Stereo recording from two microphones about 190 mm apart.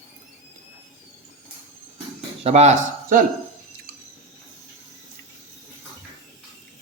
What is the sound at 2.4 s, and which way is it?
Speech, 35° right (ahead or behind).